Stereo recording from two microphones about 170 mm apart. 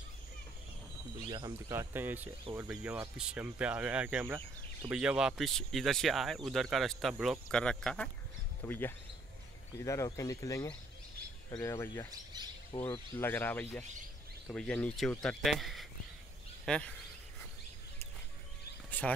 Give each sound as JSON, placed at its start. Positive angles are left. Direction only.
{"t": 1.3, "sound": "speech", "side_deg": -20}
{"t": 12.1, "sound": "speech", "side_deg": -25}
{"t": 12.9, "sound": "speech", "side_deg": 15}
{"t": 18.9, "sound": "speech", "side_deg": 10}